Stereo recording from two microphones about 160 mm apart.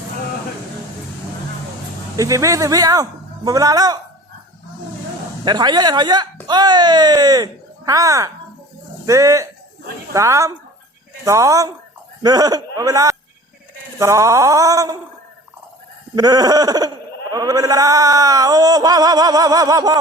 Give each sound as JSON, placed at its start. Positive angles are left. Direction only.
{"t": 2.1, "sound": "speech", "side_deg": -20}
{"t": 5.5, "sound": "speech", "side_deg": -25}
{"t": 16.1, "sound": "speech", "side_deg": -25}